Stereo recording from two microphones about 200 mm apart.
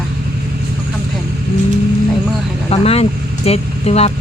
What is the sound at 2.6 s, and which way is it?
Speech, 30° left (ahead or behind).